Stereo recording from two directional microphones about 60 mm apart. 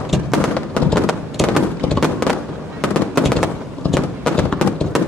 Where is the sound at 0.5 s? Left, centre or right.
Centre.